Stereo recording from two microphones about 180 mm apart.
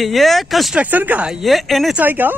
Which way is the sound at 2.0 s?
10° right (ahead or behind).